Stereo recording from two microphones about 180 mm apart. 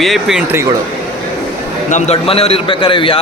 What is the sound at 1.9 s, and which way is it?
A man's voice, 40° left (ahead or behind).